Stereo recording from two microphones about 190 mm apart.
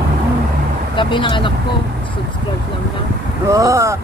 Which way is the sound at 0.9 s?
25° left (ahead or behind).